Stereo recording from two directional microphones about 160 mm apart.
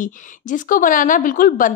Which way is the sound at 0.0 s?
55° left (ahead or behind).